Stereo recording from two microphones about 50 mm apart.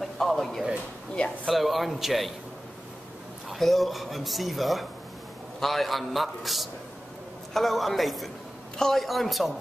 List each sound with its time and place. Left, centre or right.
0.0 s a sound: centre
1.1 s speech: centre
1.5 s speech: centre
3.4 s speech: centre